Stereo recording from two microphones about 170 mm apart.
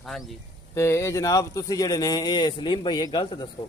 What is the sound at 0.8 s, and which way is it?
Speech, 15° left (ahead or behind).